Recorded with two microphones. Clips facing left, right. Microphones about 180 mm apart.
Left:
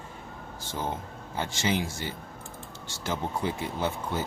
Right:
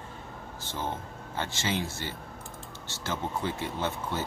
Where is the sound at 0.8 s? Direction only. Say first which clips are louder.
Left 1 dB; 10° left (ahead or behind).